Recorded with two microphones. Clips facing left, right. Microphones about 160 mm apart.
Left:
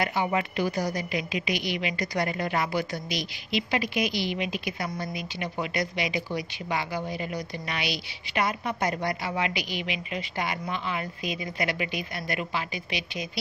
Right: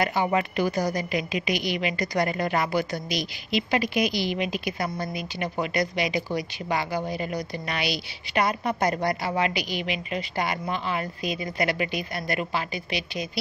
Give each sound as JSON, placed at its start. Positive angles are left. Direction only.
{"t": 0.0, "sound": "a woman's voice", "side_deg": -45}